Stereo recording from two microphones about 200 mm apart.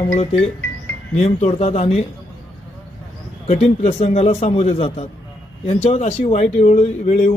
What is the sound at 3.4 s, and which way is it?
Speech, 35° left (ahead or behind).